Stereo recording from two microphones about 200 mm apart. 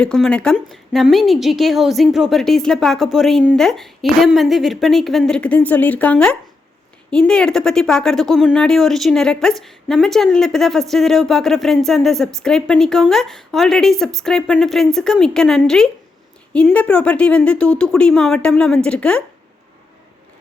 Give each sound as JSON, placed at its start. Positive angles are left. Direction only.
{"t": 0.0, "sound": "speech", "side_deg": 5}